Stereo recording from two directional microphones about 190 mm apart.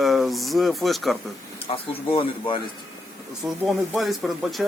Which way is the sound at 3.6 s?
Centre (ahead or behind).